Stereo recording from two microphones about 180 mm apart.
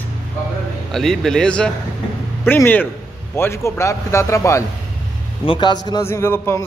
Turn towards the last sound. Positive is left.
turn(degrees=15)  # may be behind; listen again after turning